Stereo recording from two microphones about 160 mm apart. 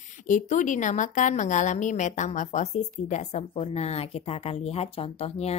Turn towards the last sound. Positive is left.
turn(degrees=40)  # may be behind; listen again after turning